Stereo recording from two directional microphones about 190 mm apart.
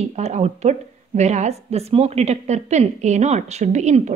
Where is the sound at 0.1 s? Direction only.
35° right (ahead or behind).